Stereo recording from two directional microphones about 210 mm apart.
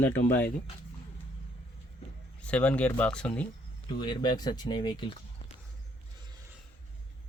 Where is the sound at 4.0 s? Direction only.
20° left (ahead or behind).